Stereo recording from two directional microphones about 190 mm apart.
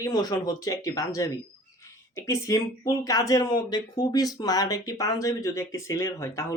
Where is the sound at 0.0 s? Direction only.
20° left (ahead or behind).